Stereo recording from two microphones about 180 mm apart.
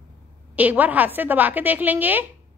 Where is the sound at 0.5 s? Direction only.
10° right (ahead or behind).